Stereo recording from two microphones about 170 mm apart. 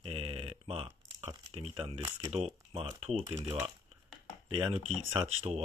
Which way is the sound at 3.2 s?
15° right (ahead or behind).